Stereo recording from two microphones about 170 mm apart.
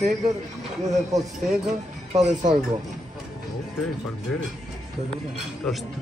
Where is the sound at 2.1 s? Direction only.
45° right (ahead or behind).